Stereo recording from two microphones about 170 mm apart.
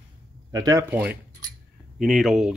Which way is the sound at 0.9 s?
10° right (ahead or behind).